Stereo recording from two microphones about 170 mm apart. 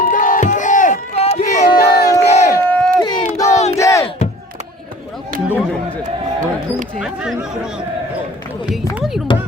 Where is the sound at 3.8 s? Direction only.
20° left (ahead or behind).